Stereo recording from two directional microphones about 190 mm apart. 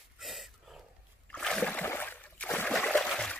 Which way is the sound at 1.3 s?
5° left (ahead or behind).